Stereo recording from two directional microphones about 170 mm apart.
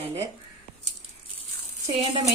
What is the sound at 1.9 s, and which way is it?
Speech, 30° right (ahead or behind).